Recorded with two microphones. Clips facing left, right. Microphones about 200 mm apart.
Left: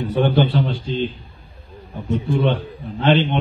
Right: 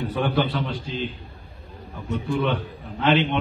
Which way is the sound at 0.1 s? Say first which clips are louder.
Left 7 dB; 30° left (ahead or behind).